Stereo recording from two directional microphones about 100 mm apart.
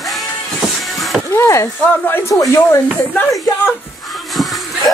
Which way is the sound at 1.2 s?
30° left (ahead or behind).